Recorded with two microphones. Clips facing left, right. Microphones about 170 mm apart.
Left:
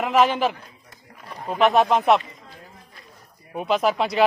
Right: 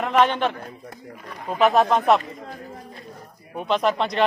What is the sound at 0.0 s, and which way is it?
Speech, 5° left (ahead or behind).